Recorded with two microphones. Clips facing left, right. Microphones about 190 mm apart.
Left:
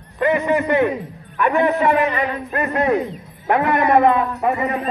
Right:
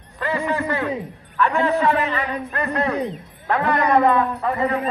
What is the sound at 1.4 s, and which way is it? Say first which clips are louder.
A man's voice: left 2 dB; 20° left (ahead or behind).